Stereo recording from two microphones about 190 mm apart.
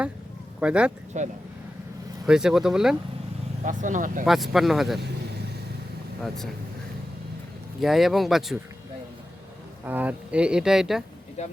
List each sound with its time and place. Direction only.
0.6 s speech: 5° right (ahead or behind)
1.1 s speech: 40° right (ahead or behind)
2.2 s speech: 5° right (ahead or behind)
3.6 s speech: 40° right (ahead or behind)
4.3 s speech: centre (ahead or behind)
6.2 s speech: centre (ahead or behind)
7.8 s speech: centre (ahead or behind)
9.8 s speech: 10° right (ahead or behind)